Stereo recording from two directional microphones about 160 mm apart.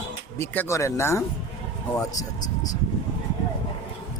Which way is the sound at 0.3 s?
15° left (ahead or behind).